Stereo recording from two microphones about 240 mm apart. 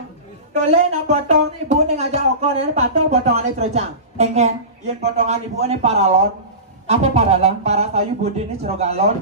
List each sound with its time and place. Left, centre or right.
0.5 s a man's voice: right